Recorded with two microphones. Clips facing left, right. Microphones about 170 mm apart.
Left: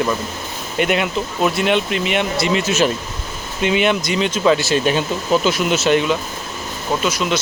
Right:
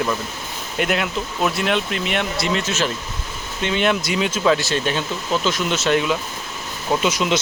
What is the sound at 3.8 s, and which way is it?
Speech, 5° right (ahead or behind).